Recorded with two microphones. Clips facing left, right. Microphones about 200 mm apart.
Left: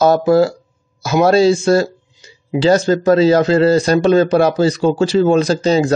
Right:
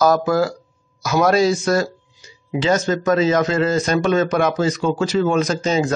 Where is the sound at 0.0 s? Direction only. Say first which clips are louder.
Left 5 dB; 30° left (ahead or behind).